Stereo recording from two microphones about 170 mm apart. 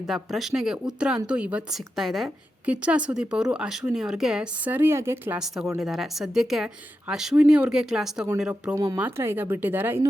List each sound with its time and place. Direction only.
0.1 s a woman's voice: centre (ahead or behind)
8.7 s speech: 20° right (ahead or behind)